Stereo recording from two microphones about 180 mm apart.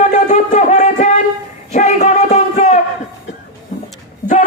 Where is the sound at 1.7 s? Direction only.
40° left (ahead or behind).